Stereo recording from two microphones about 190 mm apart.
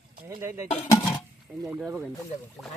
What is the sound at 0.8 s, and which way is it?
Speech, 15° left (ahead or behind).